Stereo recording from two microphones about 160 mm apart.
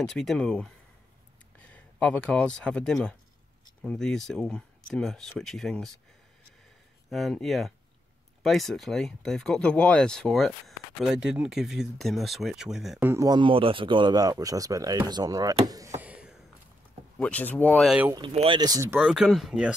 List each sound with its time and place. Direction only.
0.0 s speech: 5° left (ahead or behind)
7.1 s speech: centre (ahead or behind)
13.0 s speech: 20° right (ahead or behind)
16.0 s a sound: 5° right (ahead or behind)
17.2 s speech: 10° left (ahead or behind)
18.3 s speech: 40° right (ahead or behind)
18.6 s speech: 20° right (ahead or behind)
18.9 s speech: 5° right (ahead or behind)